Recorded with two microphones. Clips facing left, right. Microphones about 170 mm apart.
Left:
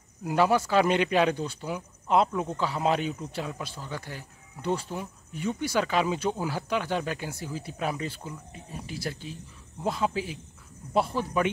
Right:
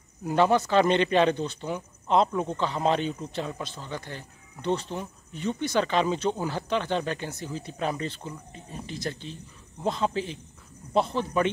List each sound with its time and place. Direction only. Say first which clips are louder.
0.2 s speech: right 1 dB; 5° left (ahead or behind)